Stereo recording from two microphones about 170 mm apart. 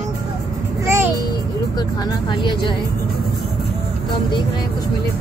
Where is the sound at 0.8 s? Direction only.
15° right (ahead or behind).